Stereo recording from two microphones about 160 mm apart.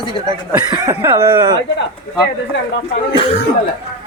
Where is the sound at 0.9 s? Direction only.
20° right (ahead or behind).